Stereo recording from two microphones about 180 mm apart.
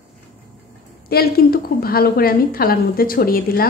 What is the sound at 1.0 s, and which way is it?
A woman's voice, 60° left (ahead or behind).